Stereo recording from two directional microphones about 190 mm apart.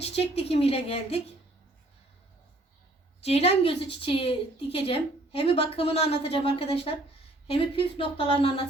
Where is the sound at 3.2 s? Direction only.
35° left (ahead or behind).